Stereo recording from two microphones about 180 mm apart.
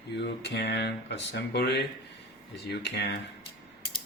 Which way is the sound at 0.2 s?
70° left (ahead or behind).